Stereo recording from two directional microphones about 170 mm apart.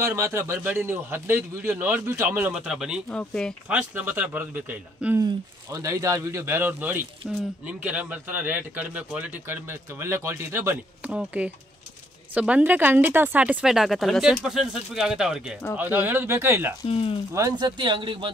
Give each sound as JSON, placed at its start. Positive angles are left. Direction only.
{"t": 0.0, "sound": "speech", "side_deg": -15}
{"t": 3.6, "sound": "speech", "side_deg": -10}
{"t": 5.2, "sound": "speech", "side_deg": -20}
{"t": 16.8, "sound": "speech", "side_deg": 35}
{"t": 17.3, "sound": "speech", "side_deg": -20}